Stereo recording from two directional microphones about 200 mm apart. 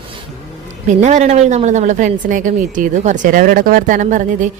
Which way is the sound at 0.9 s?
35° right (ahead or behind).